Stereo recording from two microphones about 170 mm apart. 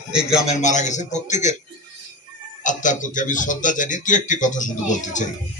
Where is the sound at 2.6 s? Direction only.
50° left (ahead or behind).